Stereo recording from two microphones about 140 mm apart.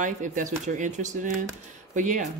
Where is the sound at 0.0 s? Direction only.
65° right (ahead or behind).